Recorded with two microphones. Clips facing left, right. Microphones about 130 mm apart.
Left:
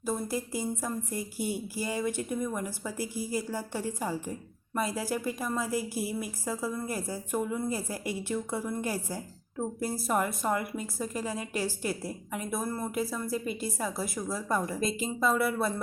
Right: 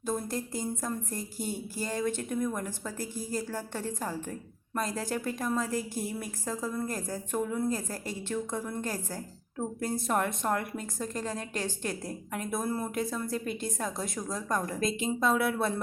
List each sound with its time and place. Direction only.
0.0 s speech: 5° left (ahead or behind)